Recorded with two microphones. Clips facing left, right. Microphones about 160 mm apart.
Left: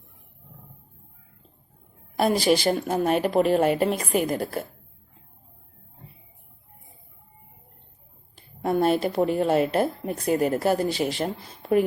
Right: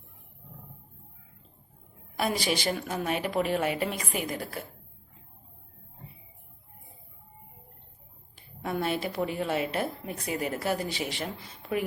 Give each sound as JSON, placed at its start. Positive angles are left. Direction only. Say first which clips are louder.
{"t": 2.1, "sound": "a woman's voice", "louder": "left 8 dB", "side_deg": 35}
{"t": 8.6, "sound": "speech", "louder": "left 8 dB", "side_deg": 40}